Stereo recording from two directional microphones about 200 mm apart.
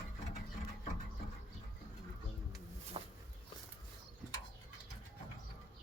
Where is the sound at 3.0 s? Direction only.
25° right (ahead or behind).